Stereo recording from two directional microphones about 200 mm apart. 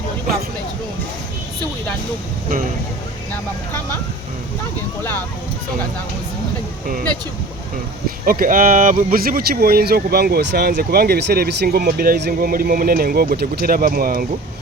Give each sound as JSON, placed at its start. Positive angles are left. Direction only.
{"t": 8.2, "sound": "speech", "side_deg": -45}